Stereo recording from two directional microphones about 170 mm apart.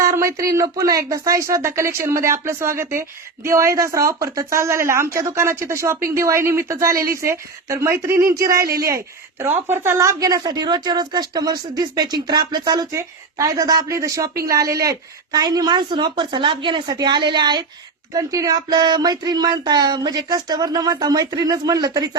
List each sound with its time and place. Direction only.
0.0 s a woman's voice: 15° right (ahead or behind)